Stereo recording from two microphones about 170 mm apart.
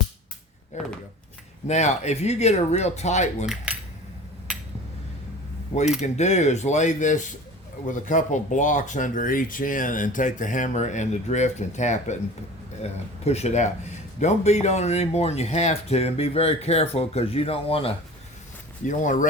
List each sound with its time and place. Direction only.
0.7 s speech: 45° left (ahead or behind)
3.4 s cutlery: 5° right (ahead or behind)
6.0 s speech: 45° left (ahead or behind)
18.9 s speech: 45° left (ahead or behind)